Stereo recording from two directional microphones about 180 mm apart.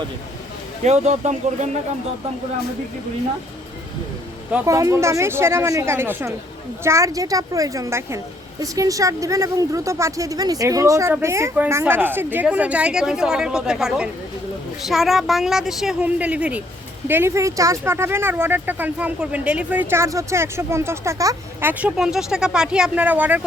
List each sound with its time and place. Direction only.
0.9 s speech: 40° right (ahead or behind)
4.6 s a woman's voice: 15° right (ahead or behind)